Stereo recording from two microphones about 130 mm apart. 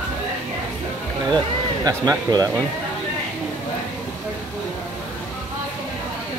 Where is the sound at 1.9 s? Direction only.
30° right (ahead or behind).